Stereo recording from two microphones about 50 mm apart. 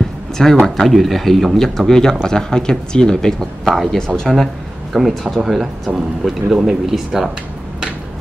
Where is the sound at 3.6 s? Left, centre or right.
Centre.